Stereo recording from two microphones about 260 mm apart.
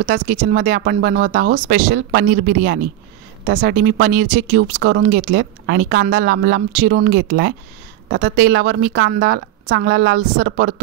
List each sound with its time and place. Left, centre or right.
0.0 s a woman's voice: right